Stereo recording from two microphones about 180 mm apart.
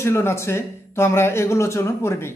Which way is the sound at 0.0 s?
15° left (ahead or behind).